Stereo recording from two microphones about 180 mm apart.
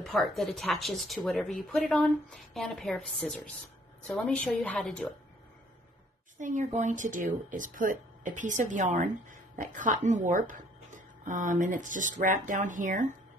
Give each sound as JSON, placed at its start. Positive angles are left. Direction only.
{"t": 0.0, "sound": "speech", "side_deg": 0}
{"t": 6.3, "sound": "speech", "side_deg": -45}